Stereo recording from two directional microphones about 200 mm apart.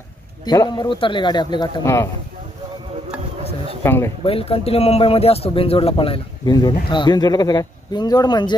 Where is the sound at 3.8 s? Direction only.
15° left (ahead or behind).